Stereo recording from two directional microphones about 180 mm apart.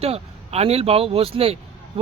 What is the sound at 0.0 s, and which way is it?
Speech, 35° right (ahead or behind).